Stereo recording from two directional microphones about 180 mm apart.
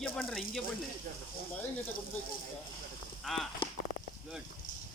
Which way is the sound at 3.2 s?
Centre (ahead or behind).